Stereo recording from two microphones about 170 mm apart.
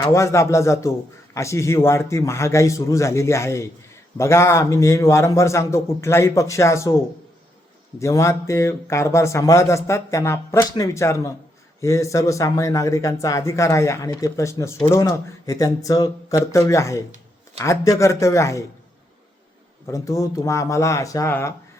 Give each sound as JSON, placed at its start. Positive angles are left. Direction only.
{"t": 0.0, "sound": "speech", "side_deg": 15}
{"t": 7.9, "sound": "speech", "side_deg": 15}
{"t": 19.9, "sound": "speech", "side_deg": 20}